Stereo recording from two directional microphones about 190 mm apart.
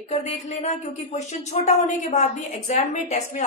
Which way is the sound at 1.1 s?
35° left (ahead or behind).